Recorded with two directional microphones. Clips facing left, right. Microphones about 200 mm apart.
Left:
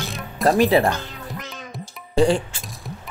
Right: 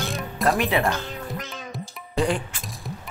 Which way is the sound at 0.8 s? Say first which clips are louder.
Left 5 dB; 35° left (ahead or behind).